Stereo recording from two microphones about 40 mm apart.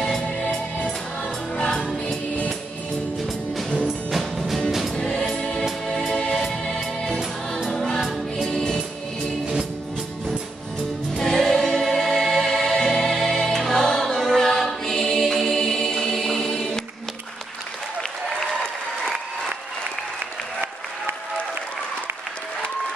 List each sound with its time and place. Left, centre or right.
4.1 s music: centre
4.9 s choir: left
5.3 s music: centre
11.1 s music: centre
14.7 s choir: centre
18.4 s applause: centre